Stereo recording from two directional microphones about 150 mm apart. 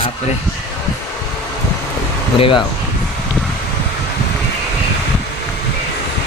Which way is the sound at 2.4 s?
35° left (ahead or behind).